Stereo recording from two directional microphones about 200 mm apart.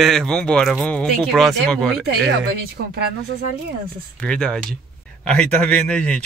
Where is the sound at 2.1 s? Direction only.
55° right (ahead or behind).